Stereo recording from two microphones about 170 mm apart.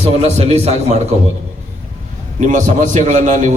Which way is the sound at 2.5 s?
45° right (ahead or behind).